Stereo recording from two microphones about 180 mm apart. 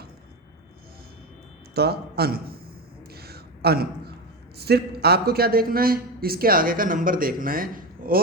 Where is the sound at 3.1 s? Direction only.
60° right (ahead or behind).